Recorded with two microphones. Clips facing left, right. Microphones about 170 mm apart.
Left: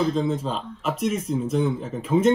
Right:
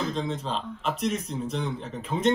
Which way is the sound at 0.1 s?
5° left (ahead or behind).